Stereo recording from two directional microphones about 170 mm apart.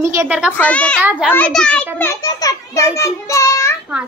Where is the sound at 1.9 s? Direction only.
15° left (ahead or behind).